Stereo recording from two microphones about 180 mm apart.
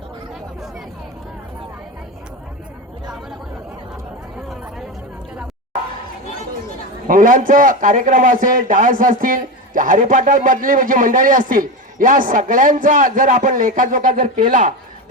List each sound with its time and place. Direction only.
7.1 s a man's voice: 45° right (ahead or behind)